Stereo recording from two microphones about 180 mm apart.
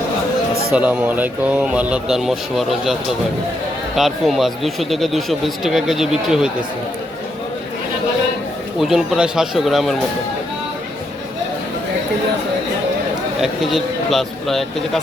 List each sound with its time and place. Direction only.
0.7 s speech: 10° right (ahead or behind)
8.8 s speech: 5° right (ahead or behind)
13.4 s speech: centre (ahead or behind)